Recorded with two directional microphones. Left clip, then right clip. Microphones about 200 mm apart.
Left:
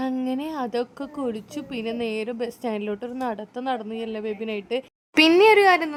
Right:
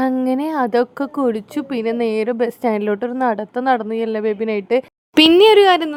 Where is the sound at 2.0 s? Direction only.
70° right (ahead or behind).